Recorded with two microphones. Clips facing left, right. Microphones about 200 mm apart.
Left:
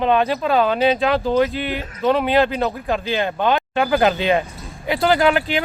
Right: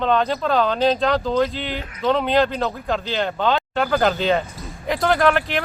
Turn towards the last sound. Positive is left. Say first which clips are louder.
# left 1 dB
turn(degrees=10)  # may be behind; listen again after turning